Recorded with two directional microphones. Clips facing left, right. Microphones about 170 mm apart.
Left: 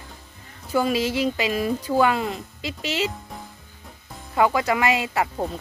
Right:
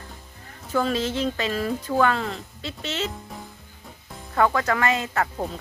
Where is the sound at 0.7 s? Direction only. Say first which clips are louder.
Left 2 dB; 10° left (ahead or behind).